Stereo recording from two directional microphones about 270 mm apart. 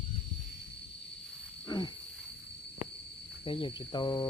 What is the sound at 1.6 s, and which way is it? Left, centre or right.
Wild animals, centre.